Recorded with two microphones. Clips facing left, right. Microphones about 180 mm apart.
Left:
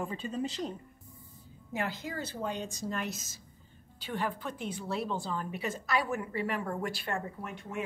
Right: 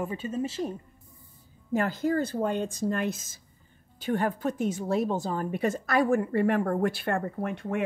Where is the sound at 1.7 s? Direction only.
45° right (ahead or behind).